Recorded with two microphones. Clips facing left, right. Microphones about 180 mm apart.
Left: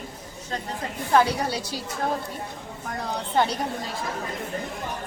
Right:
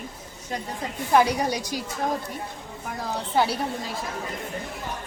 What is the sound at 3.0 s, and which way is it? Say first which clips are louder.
Speech: even; 5° right (ahead or behind).